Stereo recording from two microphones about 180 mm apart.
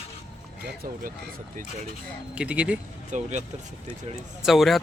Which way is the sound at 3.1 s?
40° right (ahead or behind).